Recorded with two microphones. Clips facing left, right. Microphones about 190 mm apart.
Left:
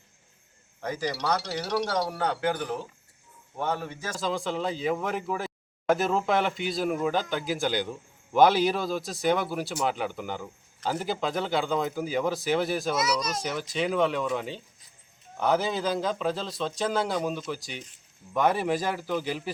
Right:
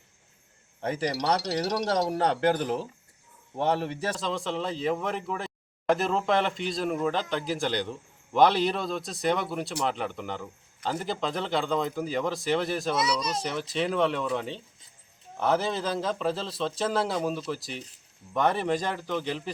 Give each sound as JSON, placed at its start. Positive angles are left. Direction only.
{"t": 0.8, "sound": "speech", "side_deg": -30}
{"t": 4.1, "sound": "speech", "side_deg": 0}
{"t": 13.0, "sound": "speech", "side_deg": -30}
{"t": 13.4, "sound": "speech", "side_deg": 0}